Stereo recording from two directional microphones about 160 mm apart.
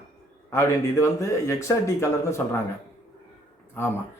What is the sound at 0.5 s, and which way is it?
Speech, 15° left (ahead or behind).